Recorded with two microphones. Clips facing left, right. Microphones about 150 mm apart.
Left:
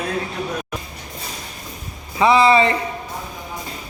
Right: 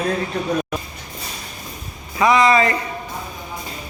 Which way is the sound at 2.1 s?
30° left (ahead or behind).